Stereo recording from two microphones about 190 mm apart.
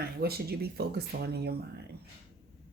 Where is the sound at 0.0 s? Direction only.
55° right (ahead or behind).